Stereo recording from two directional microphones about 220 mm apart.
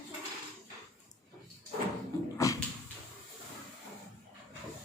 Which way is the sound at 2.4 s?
15° left (ahead or behind).